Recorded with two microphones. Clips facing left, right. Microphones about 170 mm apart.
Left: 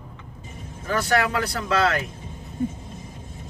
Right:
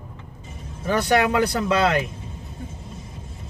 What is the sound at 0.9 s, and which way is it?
Speech, 20° right (ahead or behind).